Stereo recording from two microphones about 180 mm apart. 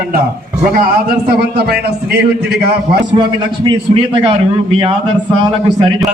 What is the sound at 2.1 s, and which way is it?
Speech, 60° right (ahead or behind).